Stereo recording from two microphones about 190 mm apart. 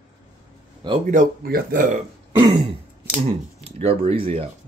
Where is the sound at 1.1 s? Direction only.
45° right (ahead or behind).